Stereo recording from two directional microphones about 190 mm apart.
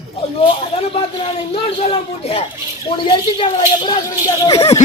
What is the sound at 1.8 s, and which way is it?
Speech, 30° left (ahead or behind).